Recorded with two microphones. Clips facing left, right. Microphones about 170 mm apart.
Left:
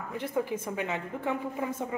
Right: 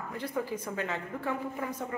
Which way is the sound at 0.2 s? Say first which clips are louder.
Left 3 dB; 25° left (ahead or behind).